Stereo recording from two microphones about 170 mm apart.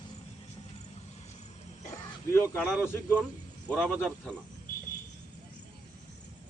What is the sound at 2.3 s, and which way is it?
A man's voice, 15° left (ahead or behind).